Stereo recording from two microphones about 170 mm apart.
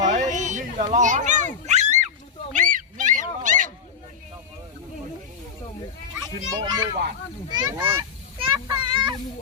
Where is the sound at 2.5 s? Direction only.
50° right (ahead or behind).